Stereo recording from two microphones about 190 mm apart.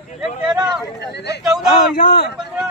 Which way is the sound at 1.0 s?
60° left (ahead or behind).